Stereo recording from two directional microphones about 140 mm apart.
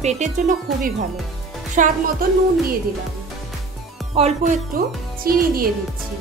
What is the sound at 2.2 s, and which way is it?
Speech, 90° right.